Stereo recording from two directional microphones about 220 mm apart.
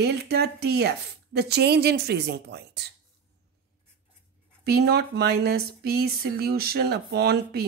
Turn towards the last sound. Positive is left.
turn(degrees=-50)  # may be behind; listen again after turning